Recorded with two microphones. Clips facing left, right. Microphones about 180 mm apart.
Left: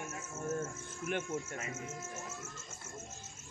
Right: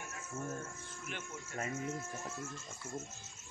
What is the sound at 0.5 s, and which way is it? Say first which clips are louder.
Music: left 6 dB; 50° left (ahead or behind).